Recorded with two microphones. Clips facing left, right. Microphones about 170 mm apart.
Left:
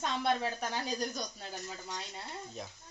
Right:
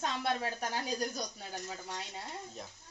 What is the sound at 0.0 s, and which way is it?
Speech, 10° right (ahead or behind).